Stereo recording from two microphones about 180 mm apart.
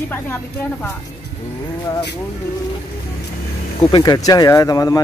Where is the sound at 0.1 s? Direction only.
10° left (ahead or behind).